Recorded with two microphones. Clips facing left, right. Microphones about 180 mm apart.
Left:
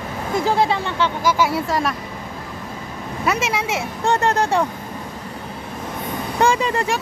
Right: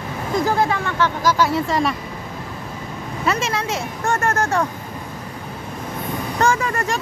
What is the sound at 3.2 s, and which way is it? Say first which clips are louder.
Speech: even; 5° left (ahead or behind).